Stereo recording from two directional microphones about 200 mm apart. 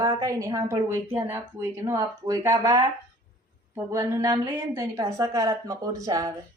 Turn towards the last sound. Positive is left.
turn(degrees=-15)  # may be behind; listen again after turning